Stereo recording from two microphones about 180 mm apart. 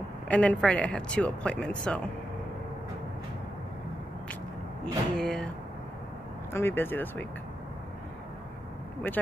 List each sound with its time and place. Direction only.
0.3 s speech: 5° left (ahead or behind)
4.8 s speech: 5° left (ahead or behind)
6.5 s speech: 10° left (ahead or behind)